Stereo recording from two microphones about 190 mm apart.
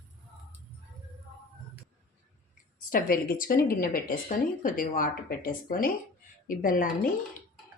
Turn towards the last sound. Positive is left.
turn(degrees=45)  # may be behind; listen again after turning